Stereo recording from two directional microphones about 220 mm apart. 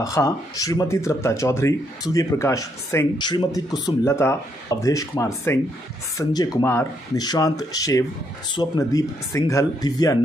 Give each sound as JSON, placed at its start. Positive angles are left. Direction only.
{"t": 0.0, "sound": "speech", "side_deg": 15}